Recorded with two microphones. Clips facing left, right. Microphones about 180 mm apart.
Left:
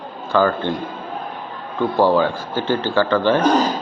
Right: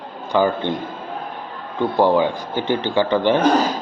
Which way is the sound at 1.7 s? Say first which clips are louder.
Even; 15° right (ahead or behind).